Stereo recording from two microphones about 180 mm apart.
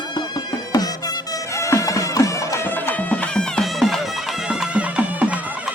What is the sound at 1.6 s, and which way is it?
Music, 15° left (ahead or behind).